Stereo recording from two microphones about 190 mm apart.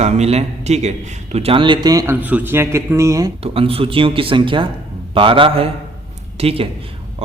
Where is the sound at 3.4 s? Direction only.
30° right (ahead or behind).